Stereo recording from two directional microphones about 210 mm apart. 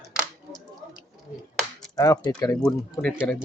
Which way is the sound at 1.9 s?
20° left (ahead or behind).